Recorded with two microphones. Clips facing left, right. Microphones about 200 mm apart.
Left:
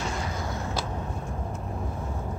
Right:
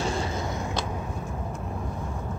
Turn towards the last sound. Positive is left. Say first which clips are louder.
# right 4 dB
turn(degrees=-30)  # may be behind; listen again after turning